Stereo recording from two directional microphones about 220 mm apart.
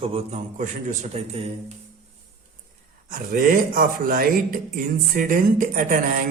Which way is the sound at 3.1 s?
40° right (ahead or behind).